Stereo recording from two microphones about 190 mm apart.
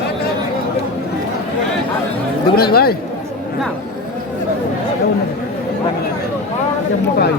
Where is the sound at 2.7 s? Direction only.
55° left (ahead or behind).